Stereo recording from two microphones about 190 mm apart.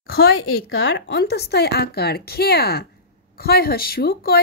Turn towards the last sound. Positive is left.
turn(degrees=50)  # may be behind; listen again after turning